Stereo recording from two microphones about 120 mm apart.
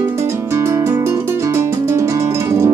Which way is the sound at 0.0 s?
20° right (ahead or behind).